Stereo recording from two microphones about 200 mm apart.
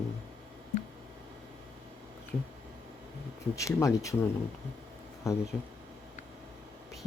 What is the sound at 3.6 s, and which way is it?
Speech, 15° left (ahead or behind).